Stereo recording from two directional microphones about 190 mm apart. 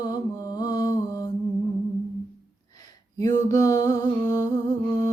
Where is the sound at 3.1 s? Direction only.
20° left (ahead or behind).